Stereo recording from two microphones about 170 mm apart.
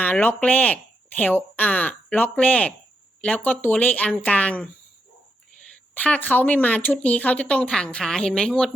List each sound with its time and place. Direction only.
0.0 s speech: 10° left (ahead or behind)
5.9 s speech: 10° left (ahead or behind)